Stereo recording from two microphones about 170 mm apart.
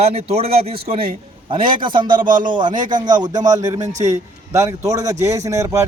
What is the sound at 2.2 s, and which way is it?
Speech, 50° right (ahead or behind).